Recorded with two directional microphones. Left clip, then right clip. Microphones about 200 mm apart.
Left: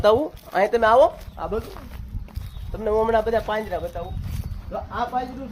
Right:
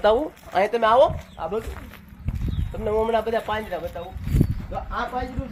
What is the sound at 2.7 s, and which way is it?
Speech, 30° left (ahead or behind).